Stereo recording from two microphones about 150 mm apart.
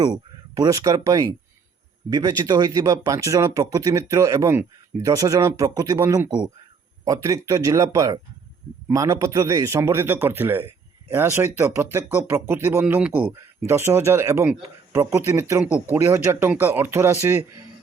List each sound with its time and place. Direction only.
0.0 s speech: 25° right (ahead or behind)